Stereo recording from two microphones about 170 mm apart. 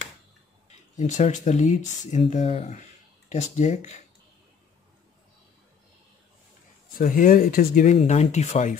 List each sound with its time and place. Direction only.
0.9 s speech: 45° left (ahead or behind)
7.0 s speech: 55° left (ahead or behind)